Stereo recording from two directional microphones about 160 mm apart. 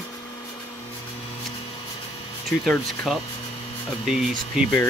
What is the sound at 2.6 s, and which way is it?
Speech, 5° left (ahead or behind).